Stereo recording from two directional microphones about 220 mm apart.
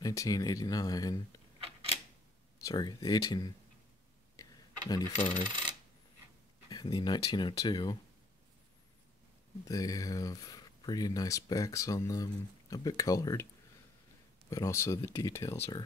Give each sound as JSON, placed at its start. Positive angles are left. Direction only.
{"t": 0.0, "sound": "speech", "side_deg": 15}
{"t": 2.6, "sound": "speech", "side_deg": 15}
{"t": 4.4, "sound": "a sound", "side_deg": 15}
{"t": 5.5, "sound": "coin", "side_deg": -20}
{"t": 6.7, "sound": "speech", "side_deg": 20}
{"t": 9.7, "sound": "speech", "side_deg": 15}
{"t": 14.5, "sound": "speech", "side_deg": 15}